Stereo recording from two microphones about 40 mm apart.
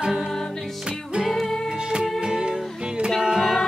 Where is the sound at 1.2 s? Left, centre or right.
Centre.